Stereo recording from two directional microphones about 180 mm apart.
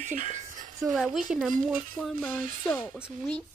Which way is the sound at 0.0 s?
45° right (ahead or behind).